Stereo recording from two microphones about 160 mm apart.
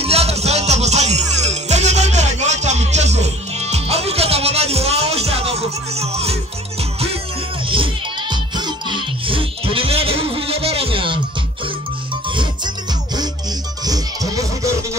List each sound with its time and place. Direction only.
0.0 s music: 40° right (ahead or behind)
7.6 s music: 35° right (ahead or behind)
12.3 s music: 30° right (ahead or behind)